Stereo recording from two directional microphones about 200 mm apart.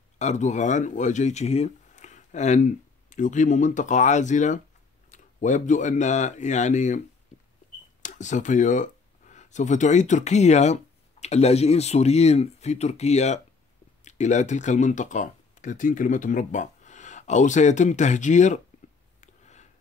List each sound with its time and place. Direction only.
0.2 s speech: 35° left (ahead or behind)
8.0 s speech: 35° left (ahead or behind)
19.2 s a sound: 35° left (ahead or behind)